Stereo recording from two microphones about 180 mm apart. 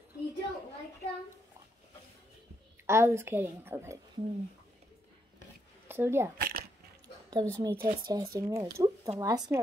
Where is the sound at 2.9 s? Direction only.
15° right (ahead or behind).